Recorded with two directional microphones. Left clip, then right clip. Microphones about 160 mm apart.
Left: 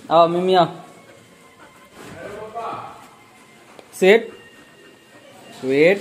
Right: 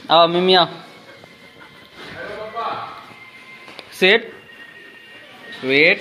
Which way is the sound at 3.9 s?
20° left (ahead or behind).